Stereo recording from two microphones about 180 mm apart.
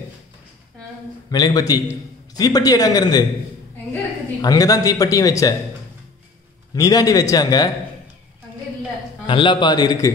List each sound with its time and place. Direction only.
1.3 s a man's voice: 20° left (ahead or behind)
4.4 s a man's voice: 20° left (ahead or behind)
6.7 s a man's voice: 20° left (ahead or behind)
9.2 s a man's voice: 25° left (ahead or behind)